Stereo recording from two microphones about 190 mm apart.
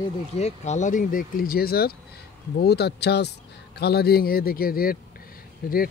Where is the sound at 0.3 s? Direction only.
35° left (ahead or behind).